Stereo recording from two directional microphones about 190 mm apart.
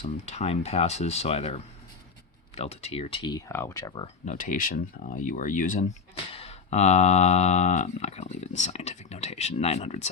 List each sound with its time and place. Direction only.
0.0 s speech: 35° left (ahead or behind); by 4.0 s 20° left (ahead or behind)
4.0 s speech: 40° left (ahead or behind)
6.3 s speech: 30° left (ahead or behind)